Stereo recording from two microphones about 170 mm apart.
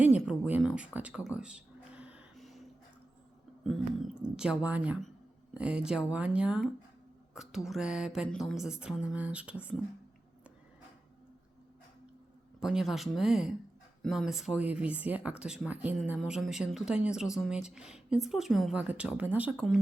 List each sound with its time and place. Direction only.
0.0 s a sound: 10° right (ahead or behind)
3.6 s a woman's voice: centre (ahead or behind)
12.5 s a woman's voice: 5° right (ahead or behind)
19.5 s a woman's voice: centre (ahead or behind)